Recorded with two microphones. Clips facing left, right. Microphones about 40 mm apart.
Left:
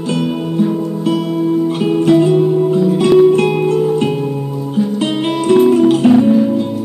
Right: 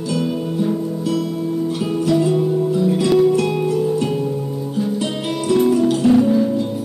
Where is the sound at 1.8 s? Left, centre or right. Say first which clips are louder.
Left 6 dB; left.